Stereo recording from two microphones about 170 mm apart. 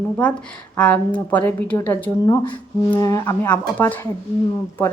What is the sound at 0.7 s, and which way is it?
A woman's voice, 10° left (ahead or behind).